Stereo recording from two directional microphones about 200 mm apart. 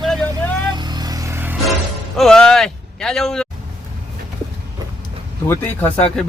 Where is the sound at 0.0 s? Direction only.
Centre (ahead or behind).